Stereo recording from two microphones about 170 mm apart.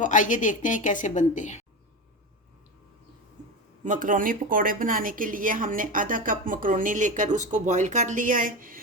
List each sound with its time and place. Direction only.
0.0 s a woman's voice: 50° left (ahead or behind)
3.8 s a woman's voice: 50° right (ahead or behind)